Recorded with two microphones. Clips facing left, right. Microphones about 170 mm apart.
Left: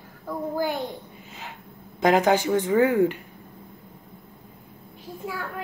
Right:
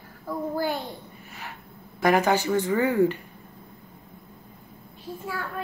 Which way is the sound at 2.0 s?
15° left (ahead or behind).